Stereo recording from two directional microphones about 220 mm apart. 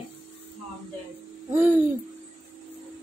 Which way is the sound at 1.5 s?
10° right (ahead or behind).